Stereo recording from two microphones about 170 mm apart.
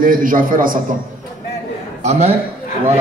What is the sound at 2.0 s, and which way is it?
Speech, 40° right (ahead or behind).